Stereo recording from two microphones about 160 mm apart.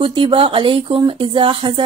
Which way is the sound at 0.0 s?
30° right (ahead or behind).